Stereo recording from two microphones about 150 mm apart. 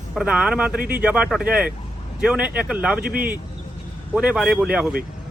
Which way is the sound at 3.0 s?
85° right.